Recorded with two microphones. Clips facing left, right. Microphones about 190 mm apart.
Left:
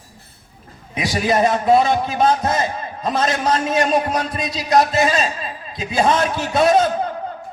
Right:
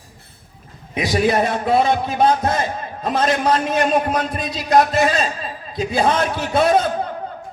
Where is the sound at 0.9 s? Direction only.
55° right (ahead or behind).